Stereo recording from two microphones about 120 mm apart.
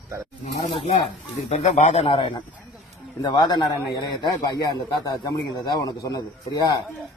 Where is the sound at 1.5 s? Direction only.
75° left (ahead or behind); by 2.2 s 60° left (ahead or behind).